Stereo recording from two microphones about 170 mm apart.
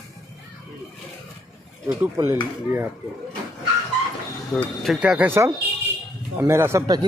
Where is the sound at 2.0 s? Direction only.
15° right (ahead or behind).